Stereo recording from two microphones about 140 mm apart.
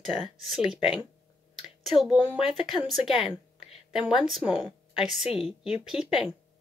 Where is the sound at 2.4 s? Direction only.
Centre (ahead or behind).